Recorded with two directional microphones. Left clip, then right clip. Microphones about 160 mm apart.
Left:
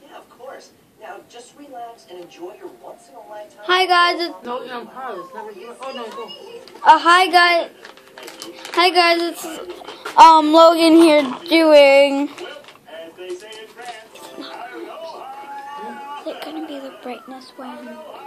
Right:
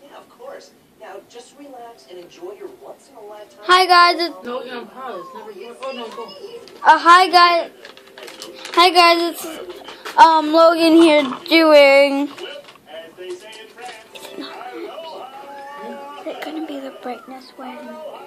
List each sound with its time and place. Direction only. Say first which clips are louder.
3.6 s speech: right 3 dB; 20° right (ahead or behind)
4.5 s a man's voice: even; 10° left (ahead or behind)
6.8 s a woman's voice: right 1 dB; 5° right (ahead or behind)
8.7 s a woman's voice: right 3 dB; 15° right (ahead or behind)
9.8 s child singing: left 1 dB; 20° left (ahead or behind); by 12.3 s centre (ahead or behind)
14.1 s music: right 2 dB; 20° right (ahead or behind)
16.3 s a sound: right 4 dB; 15° right (ahead or behind)